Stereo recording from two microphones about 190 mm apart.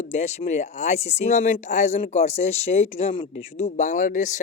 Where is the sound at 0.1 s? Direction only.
35° left (ahead or behind).